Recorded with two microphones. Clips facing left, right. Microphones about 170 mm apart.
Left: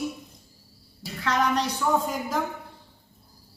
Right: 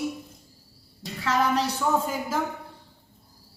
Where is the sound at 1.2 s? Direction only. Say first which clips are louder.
Right 1 dB; 5° right (ahead or behind).